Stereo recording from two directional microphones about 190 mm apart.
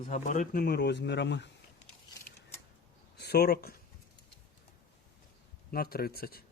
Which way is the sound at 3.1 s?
55° left (ahead or behind).